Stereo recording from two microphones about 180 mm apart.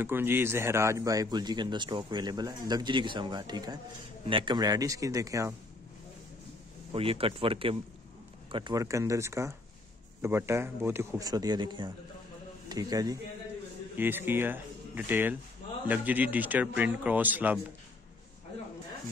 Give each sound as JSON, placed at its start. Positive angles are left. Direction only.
{"t": 0.0, "sound": "a man's voice", "side_deg": -10}
{"t": 6.9, "sound": "speech", "side_deg": -30}